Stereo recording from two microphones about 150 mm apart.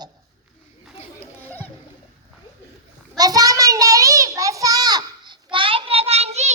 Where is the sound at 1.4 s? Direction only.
10° left (ahead or behind).